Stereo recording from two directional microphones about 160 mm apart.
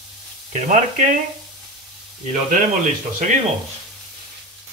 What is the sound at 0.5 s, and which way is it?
Speech, 50° right (ahead or behind).